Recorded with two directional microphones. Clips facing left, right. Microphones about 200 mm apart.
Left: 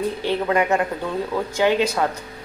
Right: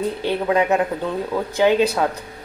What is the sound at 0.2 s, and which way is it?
Speech, 15° right (ahead or behind).